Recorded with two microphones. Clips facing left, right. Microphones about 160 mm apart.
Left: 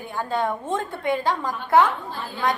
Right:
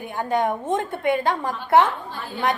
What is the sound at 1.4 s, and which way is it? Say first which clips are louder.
Speech: even; 25° right (ahead or behind).